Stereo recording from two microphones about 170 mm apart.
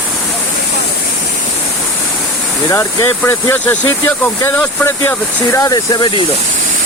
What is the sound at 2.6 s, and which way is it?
Speech, 15° left (ahead or behind).